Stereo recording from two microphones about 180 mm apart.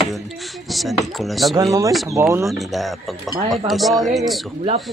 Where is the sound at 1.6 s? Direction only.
20° right (ahead or behind).